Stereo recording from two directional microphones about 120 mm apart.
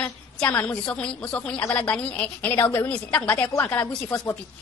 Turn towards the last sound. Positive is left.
turn(degrees=15)  # may be behind; listen again after turning